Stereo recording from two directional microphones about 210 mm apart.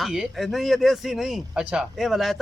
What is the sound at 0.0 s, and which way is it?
Speech, centre (ahead or behind).